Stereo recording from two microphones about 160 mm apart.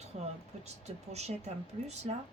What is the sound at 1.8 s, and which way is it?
Speech, 45° right (ahead or behind).